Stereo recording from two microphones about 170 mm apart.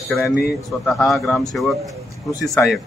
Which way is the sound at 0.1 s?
10° left (ahead or behind).